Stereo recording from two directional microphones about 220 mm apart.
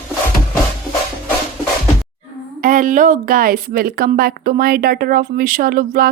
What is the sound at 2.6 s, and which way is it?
Speech, 40° right (ahead or behind).